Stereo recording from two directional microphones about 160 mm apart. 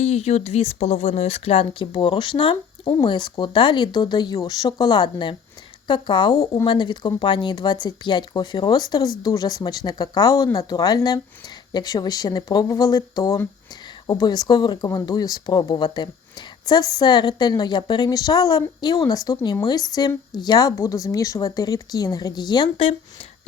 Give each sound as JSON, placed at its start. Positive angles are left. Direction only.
{"t": 0.0, "sound": "a woman's voice", "side_deg": 45}